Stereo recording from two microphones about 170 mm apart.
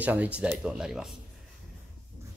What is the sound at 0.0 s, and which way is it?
Speech, 10° right (ahead or behind).